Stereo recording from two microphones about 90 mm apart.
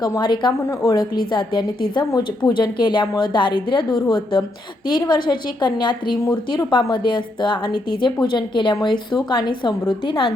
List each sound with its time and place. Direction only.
0.2 s a woman's voice: 55° left (ahead or behind)
0.7 s a woman's voice: 40° left (ahead or behind); by 10.3 s 65° left (ahead or behind)